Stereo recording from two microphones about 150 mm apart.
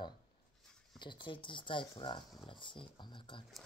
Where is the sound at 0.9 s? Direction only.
30° left (ahead or behind).